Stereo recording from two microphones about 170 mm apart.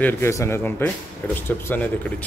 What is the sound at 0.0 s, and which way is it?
A man's voice, 15° left (ahead or behind).